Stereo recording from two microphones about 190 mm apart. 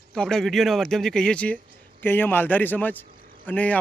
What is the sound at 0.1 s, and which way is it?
A man's voice, 5° left (ahead or behind).